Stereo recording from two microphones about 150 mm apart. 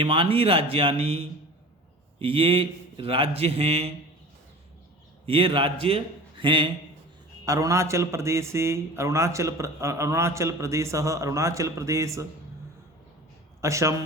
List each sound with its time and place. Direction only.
0.0 s a man's voice: 35° right (ahead or behind)
5.2 s a man's voice: 35° right (ahead or behind)
7.4 s a man's voice: 20° right (ahead or behind)
13.6 s a man's voice: 20° right (ahead or behind)